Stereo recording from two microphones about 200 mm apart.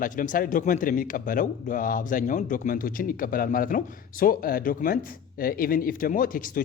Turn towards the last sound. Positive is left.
turn(degrees=45)  # may be behind; listen again after turning